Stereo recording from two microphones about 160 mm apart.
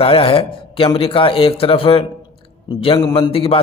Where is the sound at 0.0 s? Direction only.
35° left (ahead or behind).